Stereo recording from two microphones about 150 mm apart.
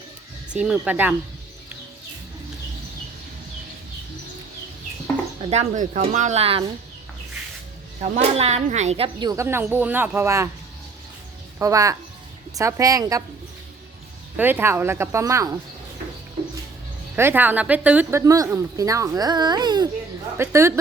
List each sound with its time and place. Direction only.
0.5 s speech: 5° right (ahead or behind)
5.5 s speech: 55° right (ahead or behind)
8.1 s speech: 45° right (ahead or behind)
9.1 s speech: 25° right (ahead or behind)
11.6 s a woman's voice: 20° right (ahead or behind)
14.3 s speech: 10° right (ahead or behind)
17.2 s a woman's voice: 15° right (ahead or behind)
20.3 s speech: 15° right (ahead or behind)